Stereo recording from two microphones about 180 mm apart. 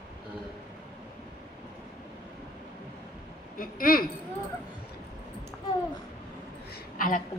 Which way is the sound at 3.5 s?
50° left (ahead or behind).